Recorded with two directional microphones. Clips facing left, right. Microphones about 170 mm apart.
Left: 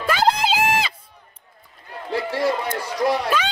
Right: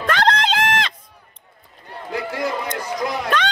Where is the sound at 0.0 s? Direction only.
5° left (ahead or behind).